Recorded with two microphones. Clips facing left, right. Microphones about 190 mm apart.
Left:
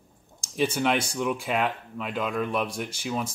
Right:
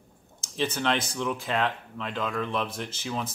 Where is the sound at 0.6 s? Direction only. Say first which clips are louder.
Left 3 dB; 10° left (ahead or behind).